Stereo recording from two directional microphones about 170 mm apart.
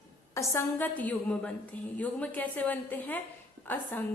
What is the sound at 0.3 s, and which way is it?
A woman's voice, 15° left (ahead or behind).